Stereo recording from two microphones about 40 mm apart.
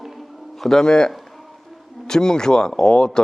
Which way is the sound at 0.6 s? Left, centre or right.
Centre.